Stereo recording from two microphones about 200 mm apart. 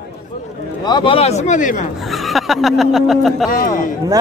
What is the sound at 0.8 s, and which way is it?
Speech, 25° left (ahead or behind).